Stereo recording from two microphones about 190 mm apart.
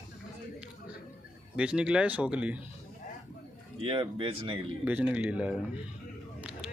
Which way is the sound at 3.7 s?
25° right (ahead or behind).